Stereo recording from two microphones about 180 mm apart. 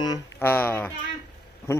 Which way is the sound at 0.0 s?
20° left (ahead or behind).